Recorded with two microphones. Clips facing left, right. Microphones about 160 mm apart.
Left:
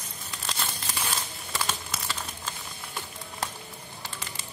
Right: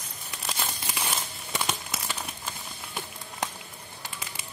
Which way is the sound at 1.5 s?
15° right (ahead or behind).